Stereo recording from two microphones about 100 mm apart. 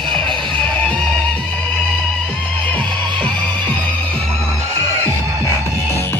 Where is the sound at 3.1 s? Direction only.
50° right (ahead or behind).